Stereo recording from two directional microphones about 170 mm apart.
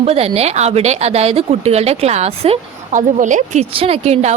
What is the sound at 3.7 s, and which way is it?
Speech, 35° right (ahead or behind).